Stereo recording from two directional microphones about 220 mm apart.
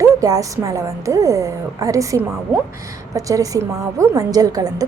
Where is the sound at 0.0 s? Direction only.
15° right (ahead or behind).